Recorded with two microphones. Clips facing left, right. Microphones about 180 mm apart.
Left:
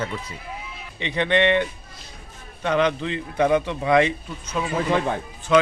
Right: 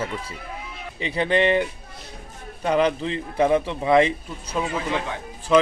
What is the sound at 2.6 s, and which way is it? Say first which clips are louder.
A man's voice: right 1 dB; 35° right (ahead or behind).